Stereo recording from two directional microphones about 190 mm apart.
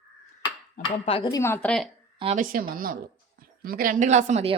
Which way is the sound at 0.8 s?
25° left (ahead or behind).